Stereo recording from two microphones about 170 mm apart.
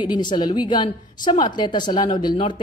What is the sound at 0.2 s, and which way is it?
A woman's voice, 25° left (ahead or behind).